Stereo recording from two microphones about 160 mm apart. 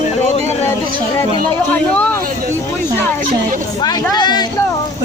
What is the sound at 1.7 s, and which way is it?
Speech, 10° left (ahead or behind).